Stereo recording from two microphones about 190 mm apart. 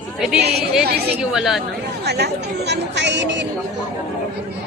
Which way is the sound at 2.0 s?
60° right (ahead or behind).